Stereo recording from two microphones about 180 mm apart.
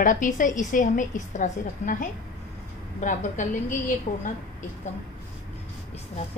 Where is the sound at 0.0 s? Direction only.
45° left (ahead or behind).